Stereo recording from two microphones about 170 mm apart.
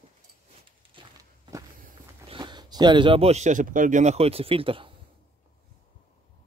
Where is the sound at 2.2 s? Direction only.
25° right (ahead or behind).